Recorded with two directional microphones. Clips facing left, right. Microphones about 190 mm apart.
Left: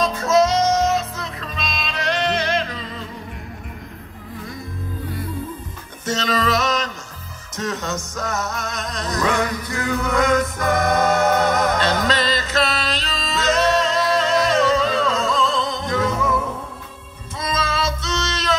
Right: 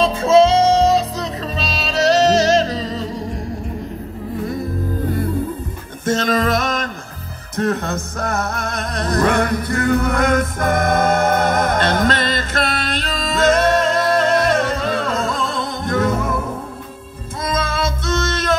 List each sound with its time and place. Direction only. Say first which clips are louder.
0.0 s music: right 5 dB; 30° right (ahead or behind)
6.0 s music: right 4 dB; 50° right (ahead or behind)
17.4 s music: right 2 dB; 55° right (ahead or behind)